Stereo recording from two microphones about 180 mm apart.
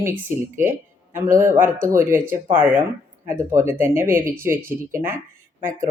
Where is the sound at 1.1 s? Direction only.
15° right (ahead or behind).